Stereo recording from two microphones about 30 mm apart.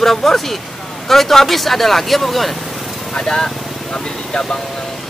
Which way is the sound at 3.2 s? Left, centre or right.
Left.